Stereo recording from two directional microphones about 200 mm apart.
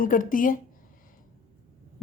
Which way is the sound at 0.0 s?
40° left (ahead or behind).